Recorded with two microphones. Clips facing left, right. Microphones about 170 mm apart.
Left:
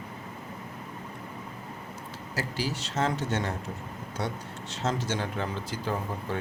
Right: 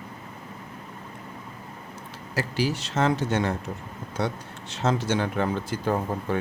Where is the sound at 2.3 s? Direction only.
65° right (ahead or behind).